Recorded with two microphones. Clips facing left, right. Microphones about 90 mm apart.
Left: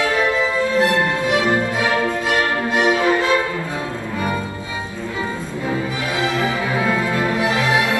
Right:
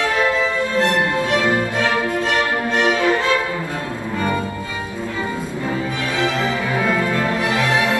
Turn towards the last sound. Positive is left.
turn(degrees=10)  # may be behind; listen again after turning